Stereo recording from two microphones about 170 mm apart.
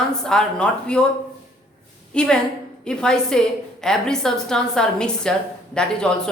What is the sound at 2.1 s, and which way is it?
A woman's voice, 5° left (ahead or behind).